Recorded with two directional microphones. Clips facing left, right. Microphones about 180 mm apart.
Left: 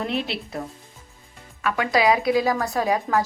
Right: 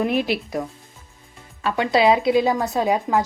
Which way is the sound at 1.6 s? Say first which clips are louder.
Right 3 dB; 25° right (ahead or behind).